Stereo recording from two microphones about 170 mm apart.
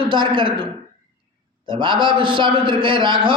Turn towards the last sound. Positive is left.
turn(degrees=-30)  # may be behind; listen again after turning